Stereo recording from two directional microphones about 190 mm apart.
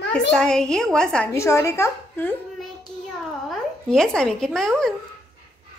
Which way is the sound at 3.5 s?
5° left (ahead or behind).